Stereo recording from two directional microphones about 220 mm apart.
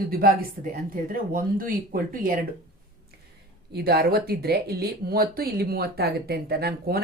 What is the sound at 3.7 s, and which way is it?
Speech, 45° right (ahead or behind).